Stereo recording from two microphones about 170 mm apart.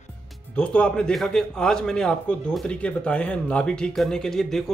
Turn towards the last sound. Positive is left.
turn(degrees=5)  # may be behind; listen again after turning